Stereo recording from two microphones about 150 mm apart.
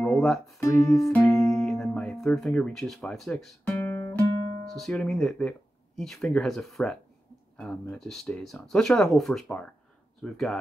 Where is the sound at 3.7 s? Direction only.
15° left (ahead or behind).